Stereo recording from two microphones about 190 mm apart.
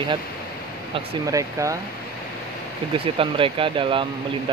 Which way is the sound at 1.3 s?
15° right (ahead or behind).